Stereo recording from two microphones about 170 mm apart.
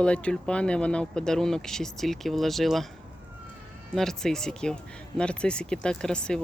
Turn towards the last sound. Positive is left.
turn(degrees=5)  # may be behind; listen again after turning